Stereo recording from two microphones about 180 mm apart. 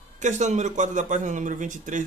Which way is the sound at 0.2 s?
40° right (ahead or behind).